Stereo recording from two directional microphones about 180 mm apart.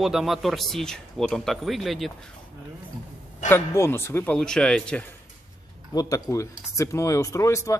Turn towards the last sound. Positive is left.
turn(degrees=15)  # may be behind; listen again after turning